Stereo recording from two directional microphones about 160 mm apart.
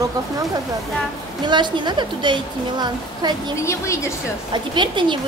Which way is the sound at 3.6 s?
15° left (ahead or behind).